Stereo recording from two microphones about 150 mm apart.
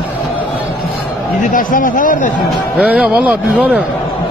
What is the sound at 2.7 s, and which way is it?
A man's voice, 5° right (ahead or behind).